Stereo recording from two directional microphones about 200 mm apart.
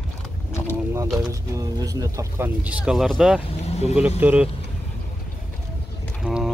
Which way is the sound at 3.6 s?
30° left (ahead or behind).